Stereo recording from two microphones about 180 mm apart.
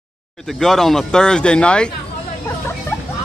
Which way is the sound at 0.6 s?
5° left (ahead or behind).